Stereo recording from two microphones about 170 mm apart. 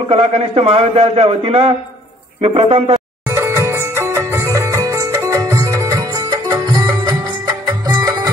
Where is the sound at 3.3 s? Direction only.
15° right (ahead or behind).